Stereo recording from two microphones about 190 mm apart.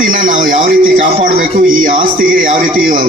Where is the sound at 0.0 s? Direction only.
45° right (ahead or behind).